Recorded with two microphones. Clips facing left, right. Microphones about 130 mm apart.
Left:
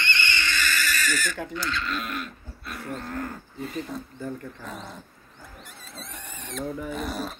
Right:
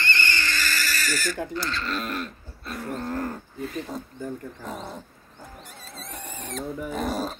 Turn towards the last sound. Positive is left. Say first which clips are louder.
# right 3 dB
turn(degrees=-40)  # may be behind; listen again after turning